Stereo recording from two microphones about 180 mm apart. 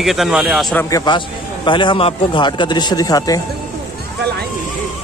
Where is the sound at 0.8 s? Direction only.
20° left (ahead or behind).